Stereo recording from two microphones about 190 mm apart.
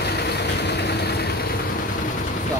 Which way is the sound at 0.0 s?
60° left (ahead or behind).